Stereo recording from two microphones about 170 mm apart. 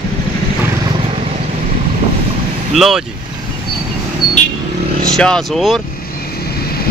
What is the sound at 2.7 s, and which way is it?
Speech, centre (ahead or behind).